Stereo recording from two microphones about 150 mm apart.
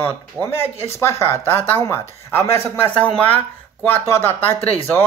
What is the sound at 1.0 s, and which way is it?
Speech, 15° left (ahead or behind).